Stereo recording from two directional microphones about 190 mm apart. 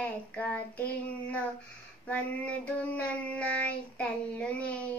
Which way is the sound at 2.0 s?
5° left (ahead or behind).